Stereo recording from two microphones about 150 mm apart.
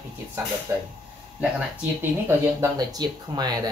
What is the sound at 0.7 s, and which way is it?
Speech, 20° right (ahead or behind).